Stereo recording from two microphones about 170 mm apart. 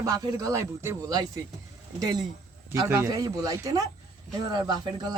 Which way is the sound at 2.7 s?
15° right (ahead or behind).